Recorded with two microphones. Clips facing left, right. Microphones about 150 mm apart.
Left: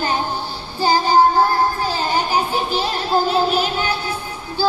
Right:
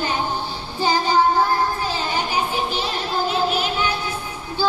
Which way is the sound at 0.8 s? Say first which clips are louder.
Left 4 dB; 35° left (ahead or behind).